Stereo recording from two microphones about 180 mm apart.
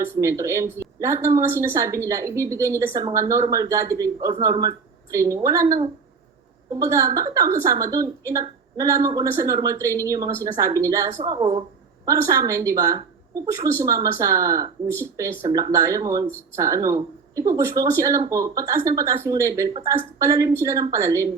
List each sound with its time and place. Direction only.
0.0 s a woman's voice: 15° right (ahead or behind)
11.3 s a woman's voice: 30° right (ahead or behind)
12.0 s a woman's voice: 15° right (ahead or behind)
14.8 s speech: 10° left (ahead or behind)
15.1 s a woman's voice: 15° right (ahead or behind)